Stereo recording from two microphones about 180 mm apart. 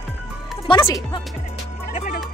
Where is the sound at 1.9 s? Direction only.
45° left (ahead or behind).